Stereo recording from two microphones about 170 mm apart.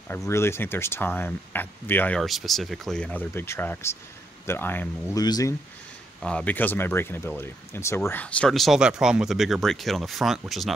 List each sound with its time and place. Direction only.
0.3 s speech: 15° left (ahead or behind)
5.2 s speech: 25° left (ahead or behind)
6.2 s speech: 10° left (ahead or behind)